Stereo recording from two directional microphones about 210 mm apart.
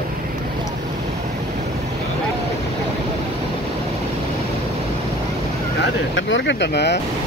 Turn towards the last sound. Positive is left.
turn(degrees=55)  # may be behind; listen again after turning